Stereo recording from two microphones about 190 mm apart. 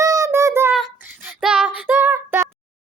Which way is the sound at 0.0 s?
15° right (ahead or behind).